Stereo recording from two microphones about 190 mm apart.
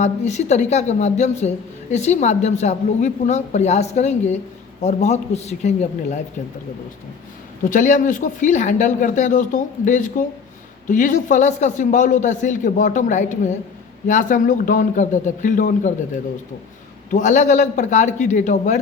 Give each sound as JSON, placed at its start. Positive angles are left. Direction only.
{"t": 0.0, "sound": "a woman's voice", "side_deg": 35}
{"t": 7.6, "sound": "a woman's voice", "side_deg": 45}
{"t": 17.1, "sound": "a woman's voice", "side_deg": 40}